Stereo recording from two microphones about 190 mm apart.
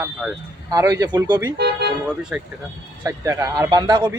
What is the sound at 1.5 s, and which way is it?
Speech, 60° right (ahead or behind).